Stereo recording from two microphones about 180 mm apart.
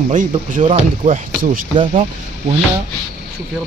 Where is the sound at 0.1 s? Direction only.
45° right (ahead or behind).